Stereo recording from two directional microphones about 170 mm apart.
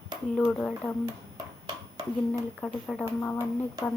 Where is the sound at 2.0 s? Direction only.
25° right (ahead or behind).